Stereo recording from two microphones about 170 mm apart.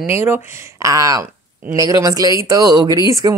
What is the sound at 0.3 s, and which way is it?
Speech, 15° right (ahead or behind).